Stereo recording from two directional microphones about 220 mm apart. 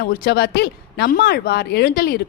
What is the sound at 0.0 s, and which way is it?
Speech, 45° left (ahead or behind).